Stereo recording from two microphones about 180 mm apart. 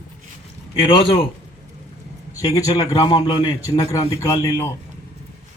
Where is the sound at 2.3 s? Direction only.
20° left (ahead or behind).